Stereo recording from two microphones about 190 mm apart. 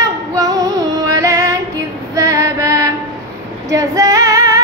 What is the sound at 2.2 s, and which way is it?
Female singing, 15° right (ahead or behind).